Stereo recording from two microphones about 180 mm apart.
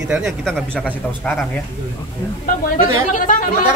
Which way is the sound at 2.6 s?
50° left (ahead or behind).